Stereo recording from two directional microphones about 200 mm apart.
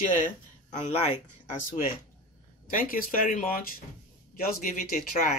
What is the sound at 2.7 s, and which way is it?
Speech, 45° left (ahead or behind).